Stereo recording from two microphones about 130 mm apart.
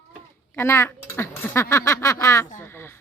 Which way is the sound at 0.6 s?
20° left (ahead or behind).